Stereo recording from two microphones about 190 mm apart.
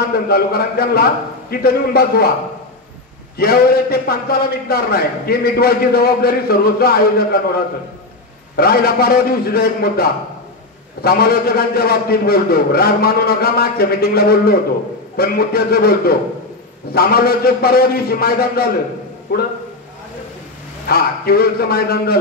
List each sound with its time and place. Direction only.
0.1 s a man's voice: 55° left (ahead or behind)
3.3 s a man's voice: 55° left (ahead or behind)
20.8 s a man's voice: 55° left (ahead or behind)